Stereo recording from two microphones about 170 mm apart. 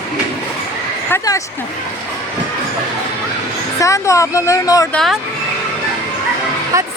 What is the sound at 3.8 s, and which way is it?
Speech, 20° left (ahead or behind).